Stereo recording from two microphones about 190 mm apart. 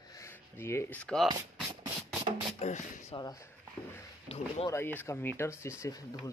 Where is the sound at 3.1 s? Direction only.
20° left (ahead or behind).